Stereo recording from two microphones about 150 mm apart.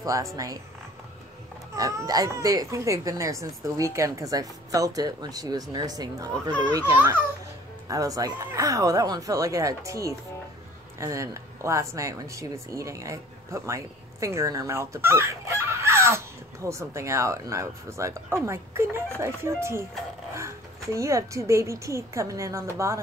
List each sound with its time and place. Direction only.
0.0 s speech: 20° right (ahead or behind)
1.8 s a child's voice: 20° right (ahead or behind)